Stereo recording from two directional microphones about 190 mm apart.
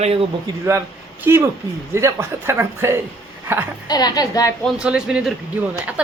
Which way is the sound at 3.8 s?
20° left (ahead or behind).